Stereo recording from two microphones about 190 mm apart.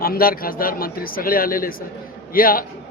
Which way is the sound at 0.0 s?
50° left (ahead or behind).